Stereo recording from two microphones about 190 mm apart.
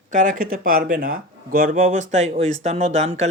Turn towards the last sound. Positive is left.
turn(degrees=-35)  # may be behind; listen again after turning